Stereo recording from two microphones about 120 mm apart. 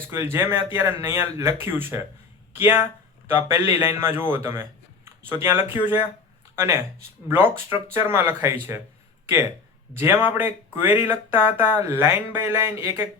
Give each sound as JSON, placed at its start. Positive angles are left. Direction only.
{"t": 0.1, "sound": "speech", "side_deg": -20}
{"t": 7.3, "sound": "speech", "side_deg": -15}
{"t": 9.9, "sound": "speech", "side_deg": -20}